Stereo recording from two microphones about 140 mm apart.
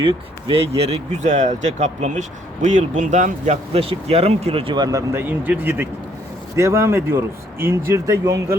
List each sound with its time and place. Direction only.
0.0 s speech: 40° right (ahead or behind)
0.8 s speech: 50° right (ahead or behind); by 8.5 s 20° right (ahead or behind)